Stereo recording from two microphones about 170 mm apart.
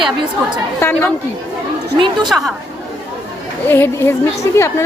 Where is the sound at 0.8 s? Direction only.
15° left (ahead or behind).